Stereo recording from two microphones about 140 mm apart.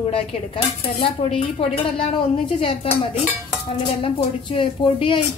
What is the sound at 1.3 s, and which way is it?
Speech, 45° left (ahead or behind).